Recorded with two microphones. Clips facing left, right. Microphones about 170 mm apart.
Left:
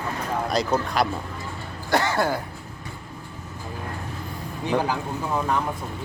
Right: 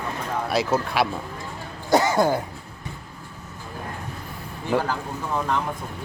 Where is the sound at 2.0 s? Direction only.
15° right (ahead or behind).